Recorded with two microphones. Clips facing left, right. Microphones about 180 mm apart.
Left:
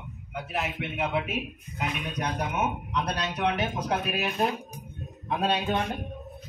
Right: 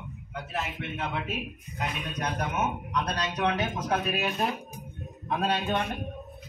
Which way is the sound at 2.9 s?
10° left (ahead or behind).